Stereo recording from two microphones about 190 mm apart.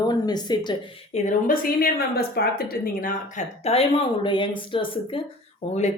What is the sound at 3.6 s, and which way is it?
Speech, 30° left (ahead or behind).